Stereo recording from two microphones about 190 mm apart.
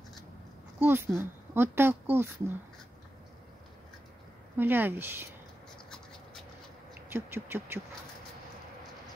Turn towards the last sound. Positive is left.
turn(degrees=-10)  # may be behind; listen again after turning